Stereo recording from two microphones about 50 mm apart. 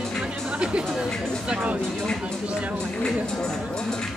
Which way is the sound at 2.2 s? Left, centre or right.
Right.